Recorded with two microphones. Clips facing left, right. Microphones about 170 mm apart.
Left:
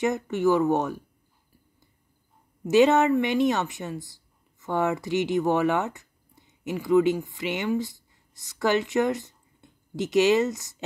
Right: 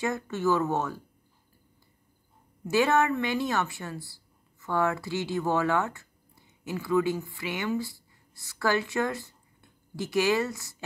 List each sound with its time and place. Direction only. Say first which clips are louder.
0.0 s speech: left 5 dB; 20° left (ahead or behind)
2.7 s a woman's voice: left 5 dB; 20° left (ahead or behind)